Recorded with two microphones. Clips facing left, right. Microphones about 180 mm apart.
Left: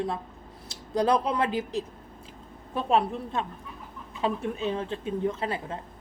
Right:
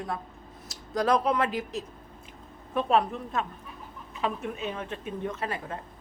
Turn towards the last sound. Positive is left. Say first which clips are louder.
# left 2 dB
turn(degrees=25)  # may be behind; listen again after turning